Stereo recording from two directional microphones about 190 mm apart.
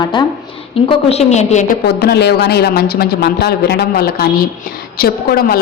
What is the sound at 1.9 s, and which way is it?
A woman's voice, 60° left (ahead or behind).